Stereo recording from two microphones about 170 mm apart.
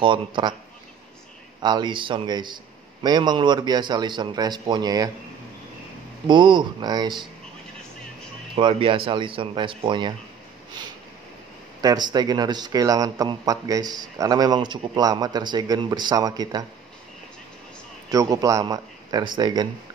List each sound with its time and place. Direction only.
0.0 s a man's voice: 30° right (ahead or behind)
1.6 s a man's voice: 25° right (ahead or behind)
6.2 s a man's voice: 25° right (ahead or behind)
8.5 s a man's voice: 30° right (ahead or behind)
11.8 s a man's voice: 25° right (ahead or behind)
18.1 s a man's voice: 20° right (ahead or behind)